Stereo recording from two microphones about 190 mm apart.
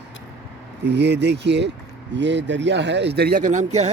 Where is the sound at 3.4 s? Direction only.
40° right (ahead or behind).